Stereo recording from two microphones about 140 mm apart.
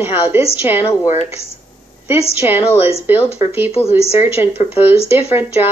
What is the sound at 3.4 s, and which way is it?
Speech, 50° left (ahead or behind).